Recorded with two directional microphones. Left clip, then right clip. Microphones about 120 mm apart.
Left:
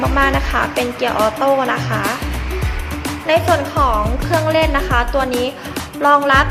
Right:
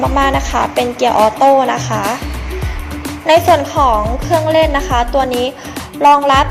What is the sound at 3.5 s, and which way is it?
Speech, 25° right (ahead or behind).